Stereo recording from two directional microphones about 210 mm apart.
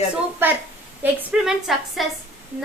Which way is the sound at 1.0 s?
5° right (ahead or behind).